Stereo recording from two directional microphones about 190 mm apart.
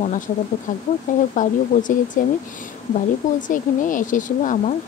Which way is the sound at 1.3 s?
40° left (ahead or behind).